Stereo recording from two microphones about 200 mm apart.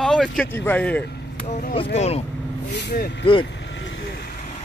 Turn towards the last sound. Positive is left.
turn(degrees=25)  # may be behind; listen again after turning